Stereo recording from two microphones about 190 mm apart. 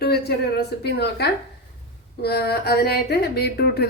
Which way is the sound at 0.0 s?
55° left (ahead or behind).